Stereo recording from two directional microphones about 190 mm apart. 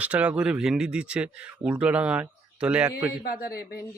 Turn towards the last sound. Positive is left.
turn(degrees=55)  # may be behind; listen again after turning